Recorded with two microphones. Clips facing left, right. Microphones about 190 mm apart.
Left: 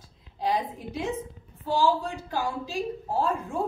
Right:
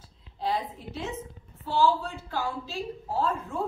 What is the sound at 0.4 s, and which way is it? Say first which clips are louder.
A woman's voice: left 2 dB; 15° left (ahead or behind).